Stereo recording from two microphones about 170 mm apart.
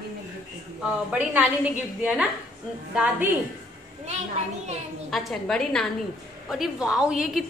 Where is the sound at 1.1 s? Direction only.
10° right (ahead or behind).